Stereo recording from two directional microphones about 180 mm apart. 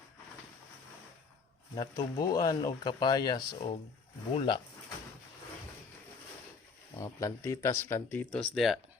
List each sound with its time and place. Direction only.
1.7 s speech: 20° left (ahead or behind)
6.9 s speech: 15° left (ahead or behind); by 8.8 s centre (ahead or behind)